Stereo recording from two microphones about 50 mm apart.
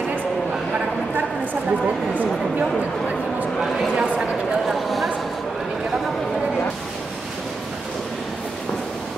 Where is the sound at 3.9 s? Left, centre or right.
Centre.